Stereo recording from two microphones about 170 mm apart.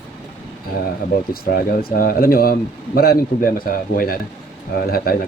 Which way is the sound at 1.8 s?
60° left (ahead or behind).